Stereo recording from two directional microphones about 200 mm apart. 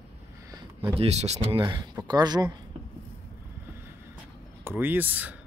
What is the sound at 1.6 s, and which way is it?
Speech, 20° right (ahead or behind).